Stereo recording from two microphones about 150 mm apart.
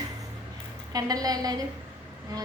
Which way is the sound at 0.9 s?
25° right (ahead or behind).